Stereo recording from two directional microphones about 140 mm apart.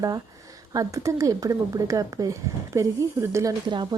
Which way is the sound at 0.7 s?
25° right (ahead or behind).